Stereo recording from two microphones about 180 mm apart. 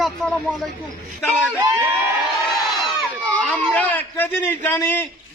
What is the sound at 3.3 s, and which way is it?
A man's voice, 5° left (ahead or behind).